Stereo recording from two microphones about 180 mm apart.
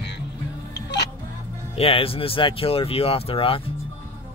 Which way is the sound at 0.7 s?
70° left (ahead or behind).